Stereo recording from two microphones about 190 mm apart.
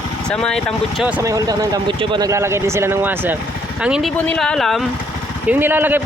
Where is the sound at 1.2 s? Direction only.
15° right (ahead or behind); by 4.8 s centre (ahead or behind).